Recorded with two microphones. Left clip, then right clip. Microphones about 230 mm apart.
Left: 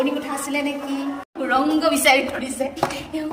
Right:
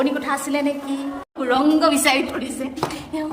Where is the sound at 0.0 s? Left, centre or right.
Right.